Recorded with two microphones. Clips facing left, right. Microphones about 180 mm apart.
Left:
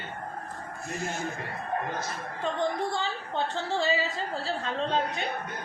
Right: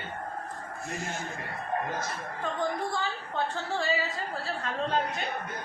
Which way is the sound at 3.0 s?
25° left (ahead or behind).